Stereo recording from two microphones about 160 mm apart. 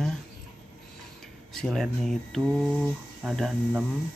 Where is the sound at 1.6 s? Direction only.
Centre (ahead or behind).